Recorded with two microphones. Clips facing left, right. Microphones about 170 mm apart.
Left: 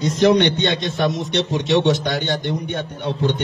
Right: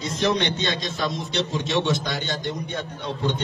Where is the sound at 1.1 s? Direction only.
75° left (ahead or behind).